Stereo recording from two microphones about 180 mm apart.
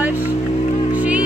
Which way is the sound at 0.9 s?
10° right (ahead or behind).